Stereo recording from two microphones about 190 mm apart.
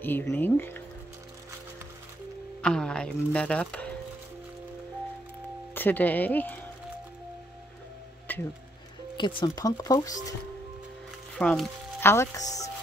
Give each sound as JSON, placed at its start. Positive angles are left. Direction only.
{"t": 0.0, "sound": "speech", "side_deg": 10}
{"t": 2.6, "sound": "speech", "side_deg": 5}
{"t": 5.8, "sound": "speech", "side_deg": 10}
{"t": 8.3, "sound": "a sound", "side_deg": 10}
{"t": 9.1, "sound": "speech", "side_deg": 25}
{"t": 11.3, "sound": "speech", "side_deg": 5}